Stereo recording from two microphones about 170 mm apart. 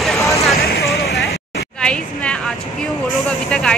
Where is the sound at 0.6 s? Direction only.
65° left (ahead or behind).